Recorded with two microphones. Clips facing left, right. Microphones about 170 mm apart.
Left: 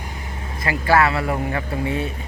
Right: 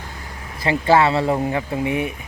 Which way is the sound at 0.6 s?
25° right (ahead or behind).